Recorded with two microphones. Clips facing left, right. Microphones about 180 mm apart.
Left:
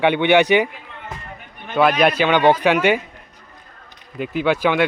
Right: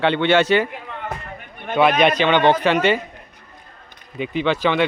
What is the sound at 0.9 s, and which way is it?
Basketball bounce, 60° right (ahead or behind).